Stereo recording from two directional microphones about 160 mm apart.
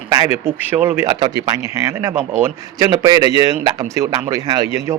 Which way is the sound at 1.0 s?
25° right (ahead or behind).